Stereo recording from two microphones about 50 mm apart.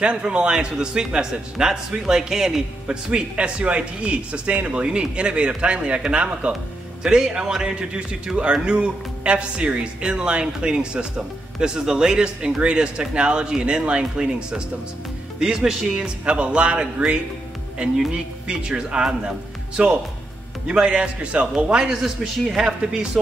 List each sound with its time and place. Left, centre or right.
0.0 s a man's voice: right
3.1 s a man's voice: right
16.3 s a man's voice: right